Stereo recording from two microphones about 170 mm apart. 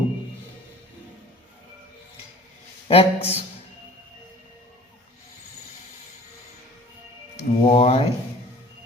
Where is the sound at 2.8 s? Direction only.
35° left (ahead or behind).